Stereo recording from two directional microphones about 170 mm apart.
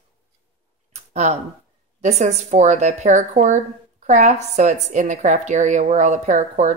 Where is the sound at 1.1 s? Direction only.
45° right (ahead or behind).